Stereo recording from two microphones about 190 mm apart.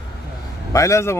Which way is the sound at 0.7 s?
15° left (ahead or behind).